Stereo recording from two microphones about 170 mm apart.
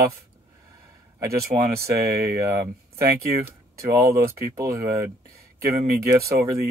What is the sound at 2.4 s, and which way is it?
Speech, 15° right (ahead or behind).